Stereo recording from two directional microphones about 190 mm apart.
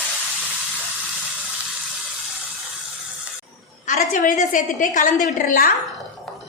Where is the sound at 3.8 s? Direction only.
40° left (ahead or behind).